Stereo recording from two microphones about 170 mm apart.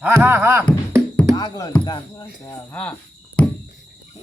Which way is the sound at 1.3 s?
25° left (ahead or behind).